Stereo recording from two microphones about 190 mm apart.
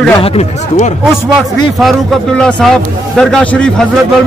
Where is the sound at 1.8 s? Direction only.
Centre (ahead or behind).